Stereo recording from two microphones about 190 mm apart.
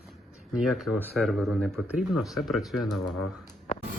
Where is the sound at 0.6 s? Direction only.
Centre (ahead or behind).